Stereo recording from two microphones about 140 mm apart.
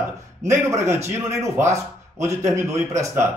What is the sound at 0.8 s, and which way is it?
Speech, 20° right (ahead or behind).